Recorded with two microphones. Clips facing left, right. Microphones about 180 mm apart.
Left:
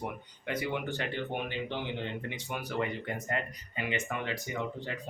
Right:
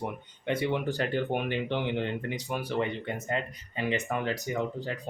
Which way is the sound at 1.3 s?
60° right (ahead or behind).